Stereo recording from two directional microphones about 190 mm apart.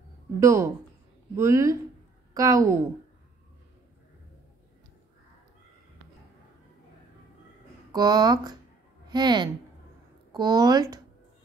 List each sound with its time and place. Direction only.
0.4 s a woman's voice: 15° right (ahead or behind)
7.9 s speech: 20° right (ahead or behind)